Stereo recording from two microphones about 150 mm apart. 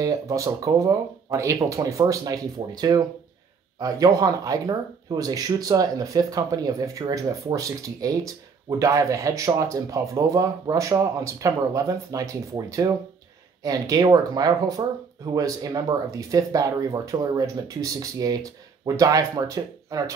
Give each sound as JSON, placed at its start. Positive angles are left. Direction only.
{"t": 0.0, "sound": "speech", "side_deg": -20}